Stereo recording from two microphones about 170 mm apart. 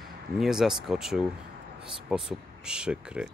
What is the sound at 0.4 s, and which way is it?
Speech, 5° right (ahead or behind).